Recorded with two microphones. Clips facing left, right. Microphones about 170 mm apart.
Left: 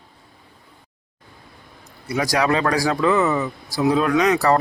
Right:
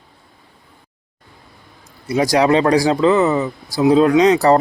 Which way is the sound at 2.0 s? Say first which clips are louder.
Right 6 dB; 25° right (ahead or behind).